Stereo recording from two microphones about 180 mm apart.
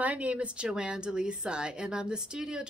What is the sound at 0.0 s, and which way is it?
A woman's voice, 5° right (ahead or behind).